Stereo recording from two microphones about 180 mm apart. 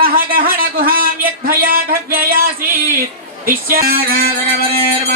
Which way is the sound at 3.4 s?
50° right (ahead or behind).